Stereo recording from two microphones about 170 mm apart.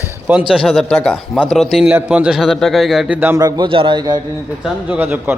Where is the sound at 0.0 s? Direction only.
10° right (ahead or behind).